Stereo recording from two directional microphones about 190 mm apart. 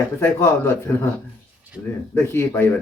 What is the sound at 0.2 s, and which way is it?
Speech, 10° left (ahead or behind).